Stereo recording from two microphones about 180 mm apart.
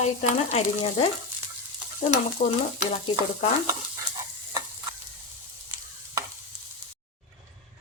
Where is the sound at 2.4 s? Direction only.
50° left (ahead or behind).